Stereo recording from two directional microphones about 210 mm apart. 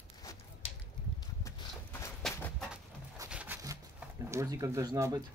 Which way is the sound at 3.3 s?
10° right (ahead or behind).